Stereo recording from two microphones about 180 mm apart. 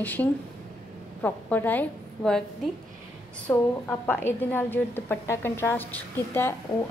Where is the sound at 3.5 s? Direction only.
10° left (ahead or behind).